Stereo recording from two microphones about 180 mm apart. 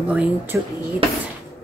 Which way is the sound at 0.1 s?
5° right (ahead or behind).